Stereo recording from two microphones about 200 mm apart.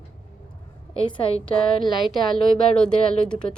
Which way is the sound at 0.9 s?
25° left (ahead or behind).